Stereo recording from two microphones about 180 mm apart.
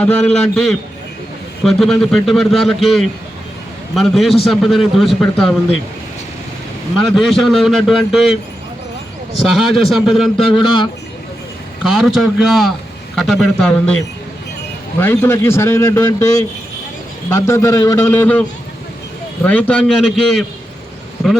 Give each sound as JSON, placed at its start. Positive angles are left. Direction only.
{"t": 0.0, "sound": "a man's voice", "side_deg": 5}
{"t": 7.2, "sound": "a man's voice", "side_deg": 0}
{"t": 9.6, "sound": "a man's voice", "side_deg": 0}
{"t": 10.3, "sound": "a man's voice", "side_deg": 25}
{"t": 11.8, "sound": "a man's voice", "side_deg": -5}
{"t": 19.5, "sound": "a man's voice", "side_deg": 5}